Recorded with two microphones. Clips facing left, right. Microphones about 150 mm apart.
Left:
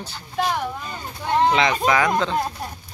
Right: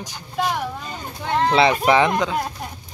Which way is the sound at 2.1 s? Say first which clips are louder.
Even; 10° right (ahead or behind).